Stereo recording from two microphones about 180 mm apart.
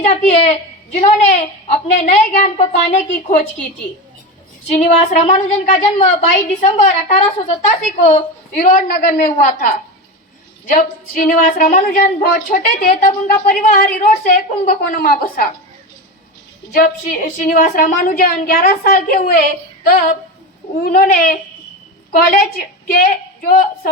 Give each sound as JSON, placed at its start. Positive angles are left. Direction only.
{"t": 0.0, "sound": "a woman's voice", "side_deg": 35}
{"t": 4.8, "sound": "a woman's voice", "side_deg": 40}
{"t": 8.5, "sound": "a woman's voice", "side_deg": 45}
{"t": 16.7, "sound": "a woman's voice", "side_deg": 50}